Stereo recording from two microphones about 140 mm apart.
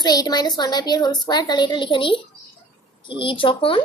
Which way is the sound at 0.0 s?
30° left (ahead or behind).